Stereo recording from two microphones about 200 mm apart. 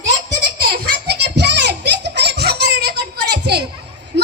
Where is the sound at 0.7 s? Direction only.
50° right (ahead or behind).